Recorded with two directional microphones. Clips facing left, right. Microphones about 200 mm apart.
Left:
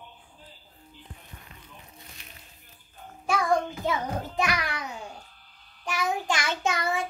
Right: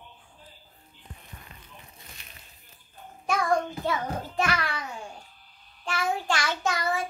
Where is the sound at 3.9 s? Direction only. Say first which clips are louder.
Left 1 dB; 15° left (ahead or behind).